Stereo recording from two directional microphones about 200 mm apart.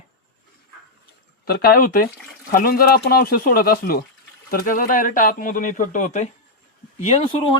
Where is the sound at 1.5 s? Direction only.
50° left (ahead or behind).